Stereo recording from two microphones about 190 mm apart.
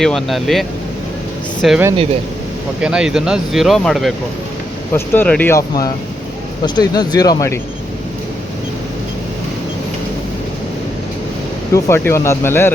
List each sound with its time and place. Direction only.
0.0 s speech: centre (ahead or behind)
1.6 s speech: centre (ahead or behind)
2.8 s speech: 5° right (ahead or behind)
4.9 s speech: 10° left (ahead or behind)
6.7 s speech: 20° left (ahead or behind)
11.7 s speech: 15° left (ahead or behind)